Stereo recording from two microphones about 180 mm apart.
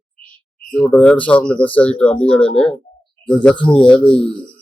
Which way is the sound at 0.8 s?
5° left (ahead or behind).